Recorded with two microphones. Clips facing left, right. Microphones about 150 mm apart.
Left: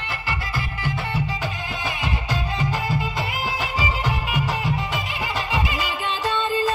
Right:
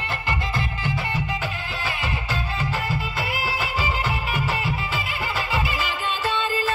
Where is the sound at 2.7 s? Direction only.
15° left (ahead or behind).